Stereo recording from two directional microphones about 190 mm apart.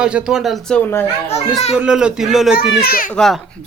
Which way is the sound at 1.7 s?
5° right (ahead or behind).